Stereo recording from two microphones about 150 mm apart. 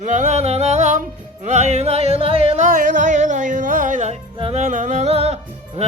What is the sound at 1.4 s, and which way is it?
Music, 50° right (ahead or behind).